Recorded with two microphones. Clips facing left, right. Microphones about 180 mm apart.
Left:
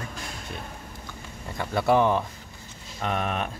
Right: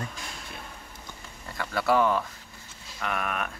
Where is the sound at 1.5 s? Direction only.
25° left (ahead or behind).